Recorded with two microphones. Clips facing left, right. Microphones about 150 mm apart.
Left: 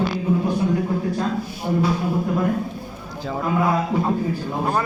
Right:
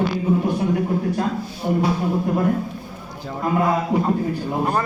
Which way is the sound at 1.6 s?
25° right (ahead or behind).